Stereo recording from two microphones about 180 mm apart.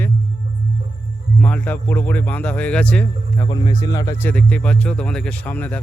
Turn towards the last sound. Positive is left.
turn(degrees=10)  # may be behind; listen again after turning